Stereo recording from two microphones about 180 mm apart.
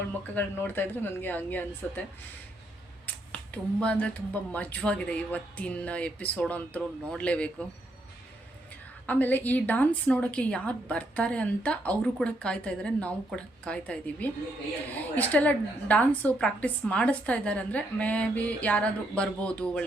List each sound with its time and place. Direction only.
0.3 s a woman's voice: 10° left (ahead or behind)
3.1 s finger snapping: 5° left (ahead or behind)
4.5 s a woman's voice: 5° left (ahead or behind)
8.7 s a woman's voice: 10° left (ahead or behind)